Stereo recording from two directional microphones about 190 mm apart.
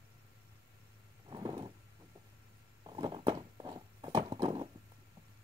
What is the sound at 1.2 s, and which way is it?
Vehicle, 25° right (ahead or behind).